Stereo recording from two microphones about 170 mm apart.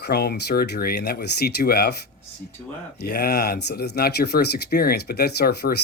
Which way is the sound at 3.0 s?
65° left (ahead or behind).